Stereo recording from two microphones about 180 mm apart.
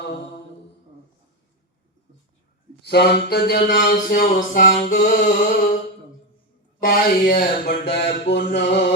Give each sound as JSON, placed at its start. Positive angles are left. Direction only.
{"t": 2.8, "sound": "a sound", "side_deg": 65}
{"t": 4.9, "sound": "music", "side_deg": 45}
{"t": 6.7, "sound": "speech", "side_deg": 50}